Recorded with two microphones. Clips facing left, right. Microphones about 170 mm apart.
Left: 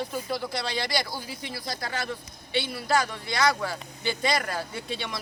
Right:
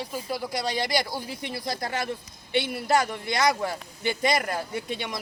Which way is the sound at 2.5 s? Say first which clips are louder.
Right 3 dB; 55° right (ahead or behind).